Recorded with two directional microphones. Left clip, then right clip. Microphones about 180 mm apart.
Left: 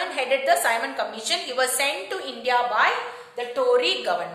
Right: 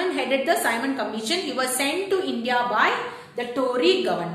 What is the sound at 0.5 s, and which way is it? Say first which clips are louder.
A woman's voice: left 1 dB; 20° left (ahead or behind).